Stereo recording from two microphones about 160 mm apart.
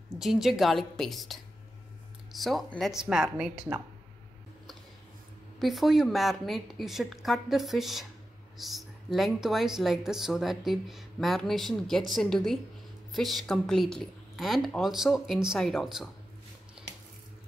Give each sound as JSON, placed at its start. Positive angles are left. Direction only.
{"t": 0.2, "sound": "a woman's voice", "side_deg": 0}
{"t": 5.6, "sound": "a woman's voice", "side_deg": 0}
{"t": 16.8, "sound": "water tap", "side_deg": -5}